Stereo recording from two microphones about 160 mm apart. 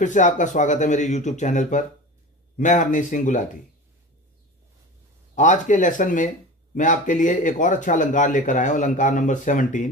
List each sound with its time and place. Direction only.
0.0 s speech: 50° left (ahead or behind)
5.3 s speech: 50° left (ahead or behind)